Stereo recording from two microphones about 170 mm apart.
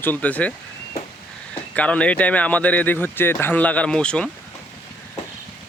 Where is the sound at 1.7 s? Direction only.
10° left (ahead or behind).